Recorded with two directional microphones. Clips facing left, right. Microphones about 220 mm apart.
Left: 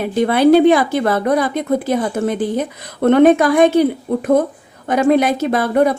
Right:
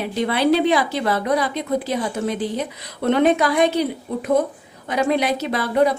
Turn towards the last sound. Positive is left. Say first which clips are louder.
# left 4 dB
turn(degrees=50)  # may be behind; listen again after turning